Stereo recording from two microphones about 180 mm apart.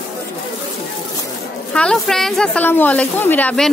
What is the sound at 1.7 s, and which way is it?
A woman's voice, 5° left (ahead or behind).